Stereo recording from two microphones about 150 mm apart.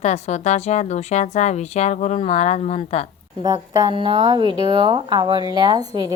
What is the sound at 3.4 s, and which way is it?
A woman's voice, 30° right (ahead or behind).